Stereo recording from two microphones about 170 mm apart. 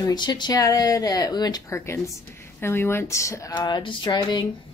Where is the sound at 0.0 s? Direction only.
25° left (ahead or behind).